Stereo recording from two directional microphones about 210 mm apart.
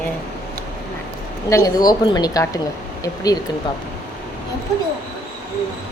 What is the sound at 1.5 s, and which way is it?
A woman's voice, 15° left (ahead or behind).